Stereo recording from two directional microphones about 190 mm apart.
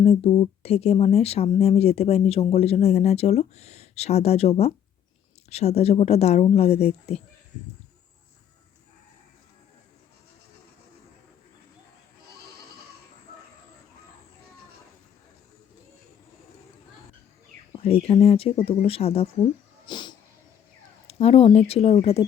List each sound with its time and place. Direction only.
0.0 s speech: 35° left (ahead or behind)
17.7 s speech: 30° left (ahead or behind)
19.9 s cat: 25° left (ahead or behind)
21.1 s speech: 30° left (ahead or behind)